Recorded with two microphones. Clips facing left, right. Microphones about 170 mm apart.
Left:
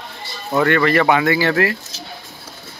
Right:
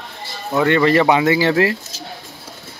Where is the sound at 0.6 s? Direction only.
25° right (ahead or behind).